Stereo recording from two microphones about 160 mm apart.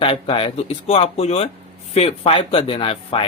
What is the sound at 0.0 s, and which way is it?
Speech, 35° left (ahead or behind).